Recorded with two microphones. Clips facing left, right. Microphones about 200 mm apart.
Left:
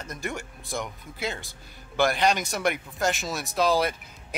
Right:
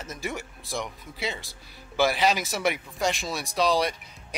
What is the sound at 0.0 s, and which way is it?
Speech, centre (ahead or behind).